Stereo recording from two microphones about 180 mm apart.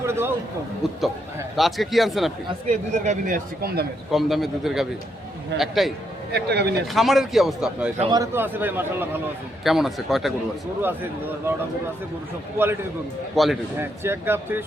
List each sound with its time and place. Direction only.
0.0 s a man's voice: 15° right (ahead or behind)
0.8 s a man's voice: centre (ahead or behind)
2.9 s speech: 45° right (ahead or behind)
4.1 s a man's voice: centre (ahead or behind)
6.3 s a man's voice: 65° right (ahead or behind)
6.9 s a man's voice: centre (ahead or behind)
8.1 s a man's voice: 15° right (ahead or behind)
10.8 s a man's voice: 10° right (ahead or behind)
13.3 s a man's voice: centre (ahead or behind)
13.7 s a man's voice: 15° right (ahead or behind)